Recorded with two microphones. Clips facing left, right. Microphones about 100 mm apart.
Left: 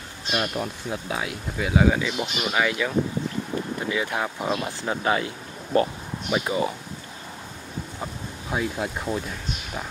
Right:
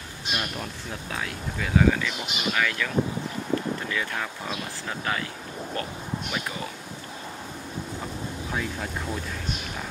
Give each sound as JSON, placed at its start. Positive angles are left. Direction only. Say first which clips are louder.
{"t": 0.3, "sound": "speech", "louder": "left 5 dB", "side_deg": 20}
{"t": 3.9, "sound": "speech", "louder": "left 4 dB", "side_deg": 20}
{"t": 8.5, "sound": "speech", "louder": "left 6 dB", "side_deg": 15}